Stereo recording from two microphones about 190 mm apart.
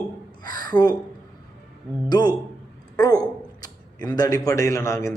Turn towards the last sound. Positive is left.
turn(degrees=15)  # may be behind; listen again after turning